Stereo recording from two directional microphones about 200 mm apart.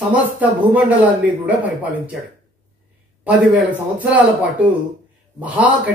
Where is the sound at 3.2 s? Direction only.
5° right (ahead or behind).